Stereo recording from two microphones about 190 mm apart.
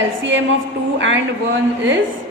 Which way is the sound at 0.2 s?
75° right (ahead or behind).